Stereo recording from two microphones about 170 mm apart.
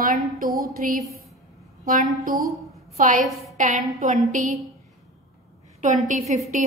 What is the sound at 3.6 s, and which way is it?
A woman's voice, 50° right (ahead or behind).